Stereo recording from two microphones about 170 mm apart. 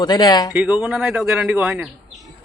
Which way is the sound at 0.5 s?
5° right (ahead or behind).